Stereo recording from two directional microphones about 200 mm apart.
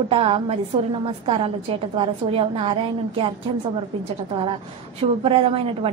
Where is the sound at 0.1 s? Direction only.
25° right (ahead or behind).